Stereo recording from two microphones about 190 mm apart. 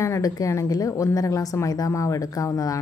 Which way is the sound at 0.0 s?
15° left (ahead or behind).